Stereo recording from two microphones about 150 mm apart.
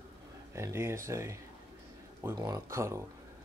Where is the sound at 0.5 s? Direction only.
15° right (ahead or behind).